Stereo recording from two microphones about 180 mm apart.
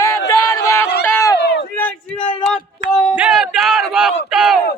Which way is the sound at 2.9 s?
Centre (ahead or behind).